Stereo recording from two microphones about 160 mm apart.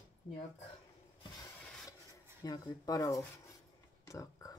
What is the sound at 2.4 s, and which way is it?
Speech, 25° left (ahead or behind).